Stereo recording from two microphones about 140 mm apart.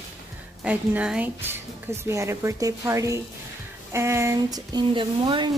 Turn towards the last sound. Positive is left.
turn(degrees=-35)  # may be behind; listen again after turning